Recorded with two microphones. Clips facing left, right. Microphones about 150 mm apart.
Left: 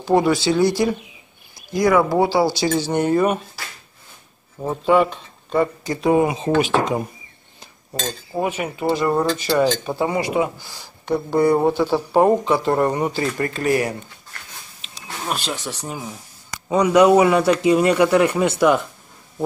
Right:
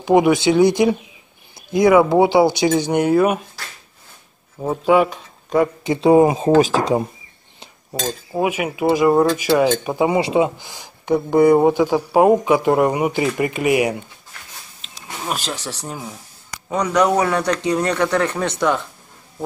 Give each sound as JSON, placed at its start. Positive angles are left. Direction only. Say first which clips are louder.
{"t": 0.0, "sound": "speech", "louder": "right 3 dB", "side_deg": -15}
{"t": 5.9, "sound": "speech", "louder": "right 7 dB", "side_deg": -30}
{"t": 7.9, "sound": "speech", "louder": "right 2 dB", "side_deg": -10}
{"t": 15.0, "sound": "speech", "louder": "even", "side_deg": -5}